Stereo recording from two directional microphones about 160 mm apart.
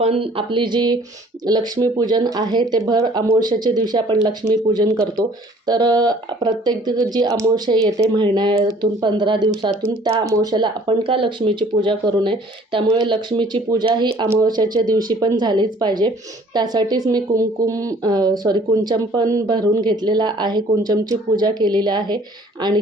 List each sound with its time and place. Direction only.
0.0 s speech: 35° right (ahead or behind)